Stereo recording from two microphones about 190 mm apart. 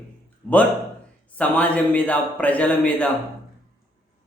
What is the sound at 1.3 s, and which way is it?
A man's voice, 5° left (ahead or behind).